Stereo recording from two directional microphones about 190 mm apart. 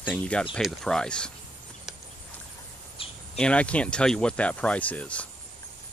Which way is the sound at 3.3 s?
5° left (ahead or behind).